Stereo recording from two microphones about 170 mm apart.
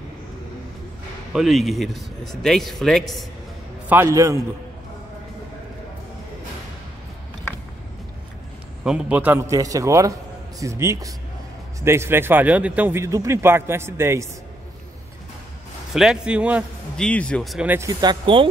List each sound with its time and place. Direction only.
1.3 s speech: centre (ahead or behind)
3.9 s speech: 15° right (ahead or behind)
8.8 s speech: 5° right (ahead or behind)
15.9 s speech: 5° right (ahead or behind)
16.9 s speech: 5° left (ahead or behind)
17.6 s speech: 20° right (ahead or behind)